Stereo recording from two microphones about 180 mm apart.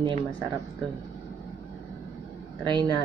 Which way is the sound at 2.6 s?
25° right (ahead or behind).